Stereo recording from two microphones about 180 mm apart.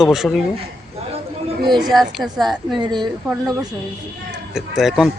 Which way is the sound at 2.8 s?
25° right (ahead or behind).